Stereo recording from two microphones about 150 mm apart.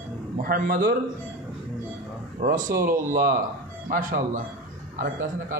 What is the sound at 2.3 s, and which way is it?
Speech, 60° right (ahead or behind).